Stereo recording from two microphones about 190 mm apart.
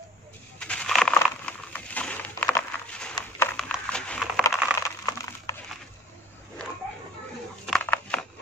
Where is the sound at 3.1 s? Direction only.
15° left (ahead or behind).